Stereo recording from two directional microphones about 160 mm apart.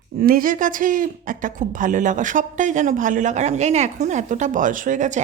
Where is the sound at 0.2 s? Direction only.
65° right (ahead or behind).